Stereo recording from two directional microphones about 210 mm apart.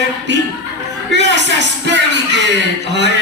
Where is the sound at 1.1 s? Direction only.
55° right (ahead or behind).